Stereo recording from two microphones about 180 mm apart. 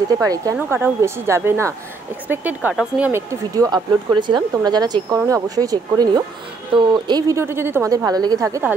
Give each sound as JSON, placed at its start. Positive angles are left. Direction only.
{"t": 0.2, "sound": "a woman's voice", "side_deg": -20}